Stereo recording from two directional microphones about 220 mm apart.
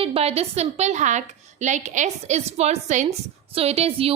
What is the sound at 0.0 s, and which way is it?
A woman's voice, 25° right (ahead or behind).